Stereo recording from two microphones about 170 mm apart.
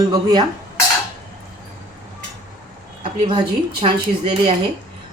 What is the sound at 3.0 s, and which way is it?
A woman's voice, 30° right (ahead or behind).